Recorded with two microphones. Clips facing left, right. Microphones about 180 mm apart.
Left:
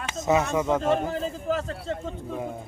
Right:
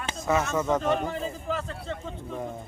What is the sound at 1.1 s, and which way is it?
Speech, 40° left (ahead or behind).